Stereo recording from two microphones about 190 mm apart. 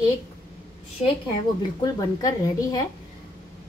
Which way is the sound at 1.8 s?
20° left (ahead or behind).